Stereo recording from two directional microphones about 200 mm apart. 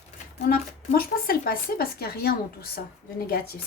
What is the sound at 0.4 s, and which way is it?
Speech, 45° left (ahead or behind).